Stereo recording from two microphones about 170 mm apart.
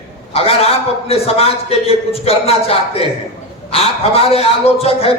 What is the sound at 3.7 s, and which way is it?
A man's voice, 35° left (ahead or behind).